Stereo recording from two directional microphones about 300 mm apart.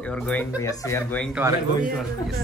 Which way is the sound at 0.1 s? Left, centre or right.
Centre.